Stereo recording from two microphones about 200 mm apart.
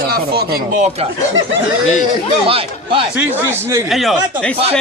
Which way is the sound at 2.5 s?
25° right (ahead or behind).